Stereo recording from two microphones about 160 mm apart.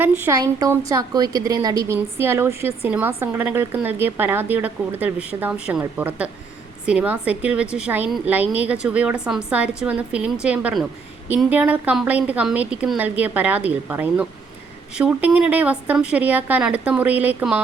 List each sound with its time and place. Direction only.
0.0 s a woman's voice: 15° right (ahead or behind)